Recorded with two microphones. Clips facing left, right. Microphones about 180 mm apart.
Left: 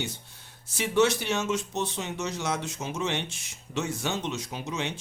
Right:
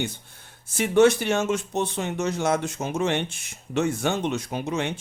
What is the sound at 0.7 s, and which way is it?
Speech, 50° right (ahead or behind).